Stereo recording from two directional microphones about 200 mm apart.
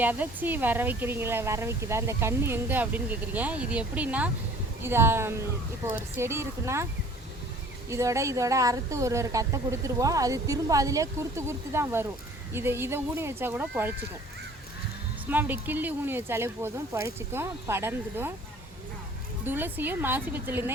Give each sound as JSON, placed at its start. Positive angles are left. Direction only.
{"t": 0.0, "sound": "speech", "side_deg": -10}
{"t": 7.9, "sound": "speech", "side_deg": -15}
{"t": 15.3, "sound": "speech", "side_deg": -10}
{"t": 19.5, "sound": "speech", "side_deg": -10}